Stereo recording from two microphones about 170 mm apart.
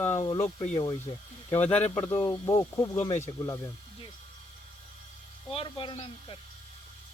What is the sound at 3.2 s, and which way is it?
Speech, 20° left (ahead or behind).